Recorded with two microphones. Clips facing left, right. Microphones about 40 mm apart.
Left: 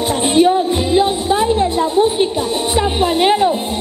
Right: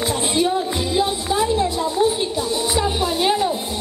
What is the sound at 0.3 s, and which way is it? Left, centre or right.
Music, left.